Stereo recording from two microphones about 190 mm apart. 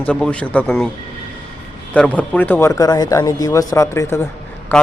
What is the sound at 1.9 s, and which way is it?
Speech, 5° left (ahead or behind).